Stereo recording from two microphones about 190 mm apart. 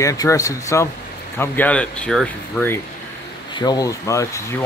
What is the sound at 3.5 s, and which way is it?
Speech, 20° left (ahead or behind).